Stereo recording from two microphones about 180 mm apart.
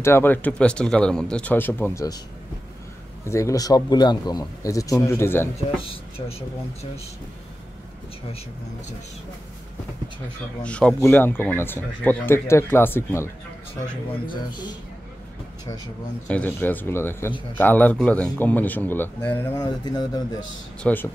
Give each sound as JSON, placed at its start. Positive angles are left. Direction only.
{"t": 0.0, "sound": "a man's voice", "side_deg": 15}
{"t": 3.3, "sound": "speech", "side_deg": 15}
{"t": 6.1, "sound": "speech", "side_deg": 35}
{"t": 10.6, "sound": "a man's voice", "side_deg": 5}
{"t": 14.3, "sound": "speech", "side_deg": 25}
{"t": 16.3, "sound": "a man's voice", "side_deg": 10}
{"t": 20.8, "sound": "a man's voice", "side_deg": 10}